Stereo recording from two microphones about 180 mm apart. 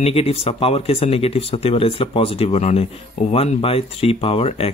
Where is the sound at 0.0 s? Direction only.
35° left (ahead or behind).